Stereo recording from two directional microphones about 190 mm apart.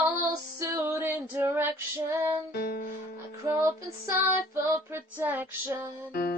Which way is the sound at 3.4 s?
15° right (ahead or behind).